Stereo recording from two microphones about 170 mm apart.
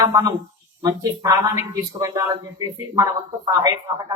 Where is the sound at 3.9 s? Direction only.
25° right (ahead or behind).